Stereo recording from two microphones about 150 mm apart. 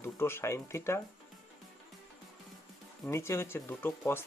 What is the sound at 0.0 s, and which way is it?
Speech, 15° left (ahead or behind).